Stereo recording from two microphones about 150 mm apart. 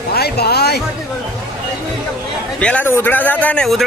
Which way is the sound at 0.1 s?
90° left.